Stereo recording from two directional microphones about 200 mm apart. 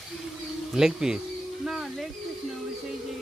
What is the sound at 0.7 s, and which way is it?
Speech, centre (ahead or behind).